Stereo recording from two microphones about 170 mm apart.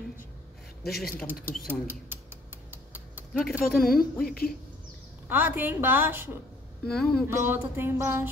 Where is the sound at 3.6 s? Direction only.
60° left (ahead or behind).